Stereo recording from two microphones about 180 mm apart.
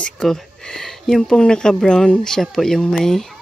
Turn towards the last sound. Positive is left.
turn(degrees=0)  # may be behind; listen again after turning